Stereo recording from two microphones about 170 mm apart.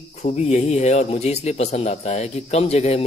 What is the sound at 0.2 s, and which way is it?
Speech, 40° left (ahead or behind).